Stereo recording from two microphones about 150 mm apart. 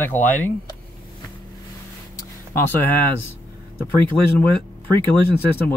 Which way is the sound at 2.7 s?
15° left (ahead or behind).